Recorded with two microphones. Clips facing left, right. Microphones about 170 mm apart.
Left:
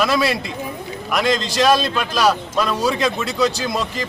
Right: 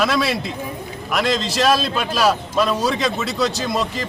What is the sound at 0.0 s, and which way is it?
A man's voice, centre (ahead or behind).